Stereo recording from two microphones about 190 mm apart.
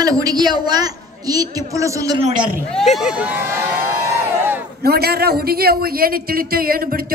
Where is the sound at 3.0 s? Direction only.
5° right (ahead or behind).